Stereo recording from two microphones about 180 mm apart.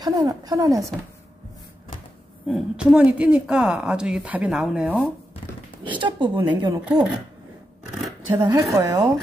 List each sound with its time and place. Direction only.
0.0 s a woman's voice: 20° right (ahead or behind)
2.4 s a woman's voice: 5° right (ahead or behind)
5.9 s a woman's voice: 25° right (ahead or behind)
6.8 s speech: 5° right (ahead or behind)
8.4 s a woman's voice: 25° right (ahead or behind)